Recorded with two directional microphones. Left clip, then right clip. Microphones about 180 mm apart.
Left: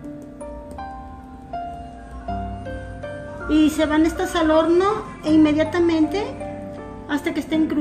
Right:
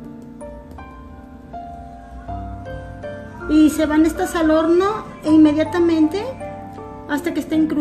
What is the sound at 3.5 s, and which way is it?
A woman's voice, 50° right (ahead or behind).